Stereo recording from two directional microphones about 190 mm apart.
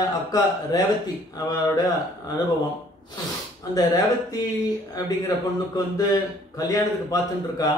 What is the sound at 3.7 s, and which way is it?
A man's voice, 20° left (ahead or behind).